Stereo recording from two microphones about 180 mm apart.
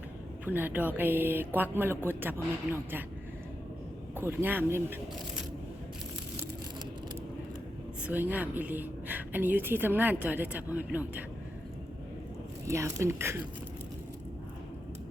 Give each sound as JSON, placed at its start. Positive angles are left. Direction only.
{"t": 0.4, "sound": "a woman's voice", "side_deg": -10}
{"t": 4.2, "sound": "a woman's voice", "side_deg": -10}
{"t": 8.0, "sound": "a woman's voice", "side_deg": -10}
{"t": 12.6, "sound": "a woman's voice", "side_deg": -15}